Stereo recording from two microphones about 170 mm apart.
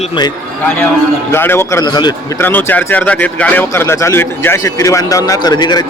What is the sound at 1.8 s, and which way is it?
Speech, 25° left (ahead or behind).